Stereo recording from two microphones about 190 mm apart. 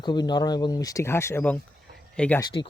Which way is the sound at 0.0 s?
25° left (ahead or behind).